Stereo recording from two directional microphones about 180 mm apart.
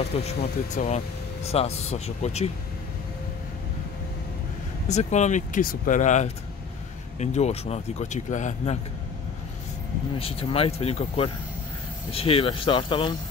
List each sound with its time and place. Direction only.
0.1 s speech: 35° left (ahead or behind)
4.8 s speech: 40° left (ahead or behind)
10.1 s speech: 30° left (ahead or behind)